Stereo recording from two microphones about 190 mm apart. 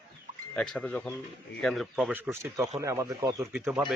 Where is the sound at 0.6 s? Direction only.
5° left (ahead or behind); by 3.5 s 20° right (ahead or behind).